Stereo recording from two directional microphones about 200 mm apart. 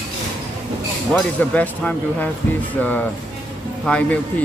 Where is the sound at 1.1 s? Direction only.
5° left (ahead or behind).